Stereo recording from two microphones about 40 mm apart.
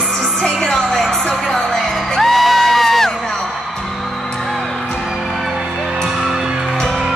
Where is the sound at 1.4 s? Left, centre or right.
Centre.